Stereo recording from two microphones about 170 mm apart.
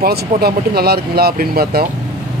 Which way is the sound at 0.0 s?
65° right (ahead or behind).